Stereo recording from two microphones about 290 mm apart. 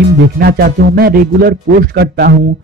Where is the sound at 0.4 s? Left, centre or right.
Right.